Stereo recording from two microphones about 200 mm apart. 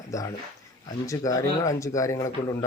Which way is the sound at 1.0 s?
15° left (ahead or behind).